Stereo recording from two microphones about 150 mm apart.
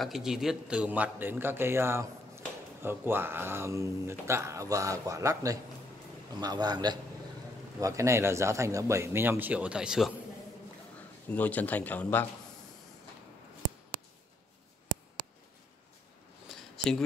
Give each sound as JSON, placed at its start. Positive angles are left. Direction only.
{"t": 0.0, "sound": "a man's voice", "side_deg": 0}
{"t": 11.2, "sound": "a man's voice", "side_deg": 10}
{"t": 16.4, "sound": "a sound", "side_deg": 0}